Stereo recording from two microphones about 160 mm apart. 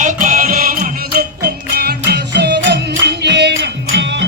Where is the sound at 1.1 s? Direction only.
80° right.